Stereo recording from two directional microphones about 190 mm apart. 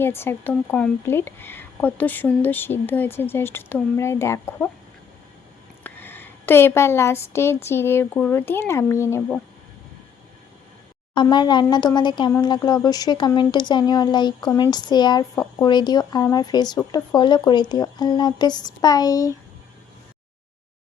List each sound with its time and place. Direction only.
0.0 s speech: 10° left (ahead or behind)
5.8 s speech: 10° left (ahead or behind)
11.1 s speech: 25° left (ahead or behind)